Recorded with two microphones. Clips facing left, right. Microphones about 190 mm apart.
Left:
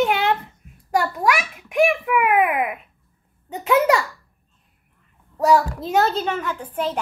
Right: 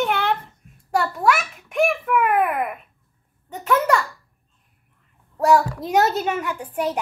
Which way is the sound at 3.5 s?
10° left (ahead or behind).